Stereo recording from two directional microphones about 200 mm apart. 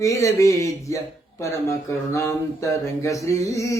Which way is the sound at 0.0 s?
15° left (ahead or behind).